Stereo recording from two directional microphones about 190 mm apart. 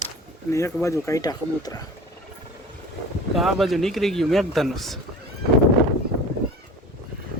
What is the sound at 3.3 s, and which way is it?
Speech, centre (ahead or behind).